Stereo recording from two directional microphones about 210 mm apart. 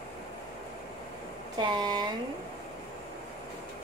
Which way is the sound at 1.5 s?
20° right (ahead or behind).